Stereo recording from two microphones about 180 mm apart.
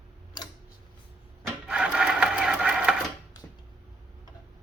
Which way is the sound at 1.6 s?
5° right (ahead or behind).